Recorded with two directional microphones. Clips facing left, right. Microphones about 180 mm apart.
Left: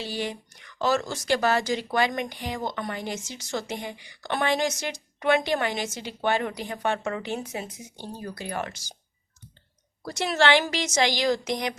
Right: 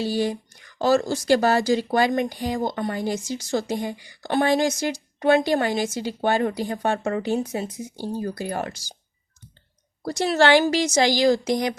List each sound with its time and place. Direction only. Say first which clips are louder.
0.0 s speech: right 8 dB; 40° right (ahead or behind)
10.0 s speech: right 5 dB; 35° right (ahead or behind)